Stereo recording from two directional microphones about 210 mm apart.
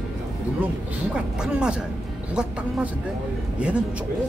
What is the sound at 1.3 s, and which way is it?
Speech, 5° right (ahead or behind).